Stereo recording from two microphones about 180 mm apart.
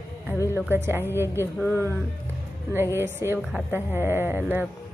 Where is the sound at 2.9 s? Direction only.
15° right (ahead or behind).